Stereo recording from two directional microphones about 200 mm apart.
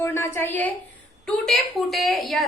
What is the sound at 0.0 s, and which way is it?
A woman's voice, 10° left (ahead or behind).